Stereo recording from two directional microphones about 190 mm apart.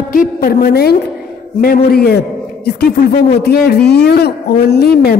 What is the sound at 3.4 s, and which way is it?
A woman's voice, 55° left (ahead or behind).